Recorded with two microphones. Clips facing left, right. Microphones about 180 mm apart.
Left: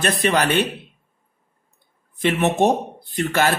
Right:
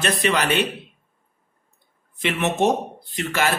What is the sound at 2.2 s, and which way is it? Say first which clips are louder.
Speech: left 4 dB; 50° left (ahead or behind).